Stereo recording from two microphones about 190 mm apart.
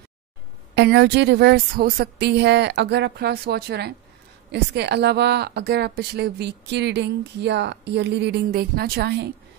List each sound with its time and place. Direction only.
0.7 s a woman's voice: 65° right (ahead or behind)